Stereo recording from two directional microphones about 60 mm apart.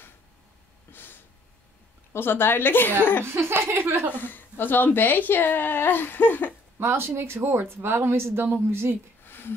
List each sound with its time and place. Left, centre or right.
0.9 s a sound: left
2.1 s a woman's voice: left
3.3 s speech: right
4.1 s a woman's voice: left
6.8 s speech: right
9.2 s a sound: left